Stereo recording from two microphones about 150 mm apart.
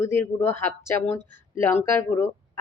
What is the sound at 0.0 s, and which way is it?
Speech, 15° left (ahead or behind).